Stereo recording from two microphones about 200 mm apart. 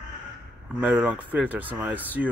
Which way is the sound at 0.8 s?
10° right (ahead or behind).